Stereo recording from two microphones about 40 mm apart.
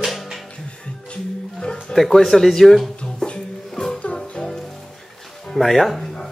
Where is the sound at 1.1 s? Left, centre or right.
Centre.